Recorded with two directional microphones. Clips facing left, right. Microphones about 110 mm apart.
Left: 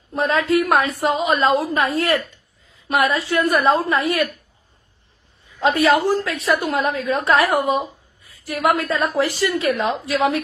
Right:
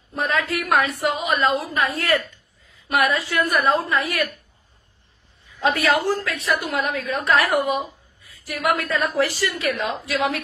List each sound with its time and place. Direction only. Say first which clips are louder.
0.1 s a woman's voice: left 6 dB; 30° left (ahead or behind)
5.6 s a woman's voice: left 4 dB; 25° left (ahead or behind)
6.3 s a woman's voice: left 4 dB; 30° left (ahead or behind)